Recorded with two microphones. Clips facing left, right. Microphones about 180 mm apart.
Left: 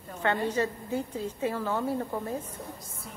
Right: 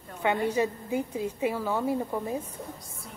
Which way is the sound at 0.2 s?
10° right (ahead or behind).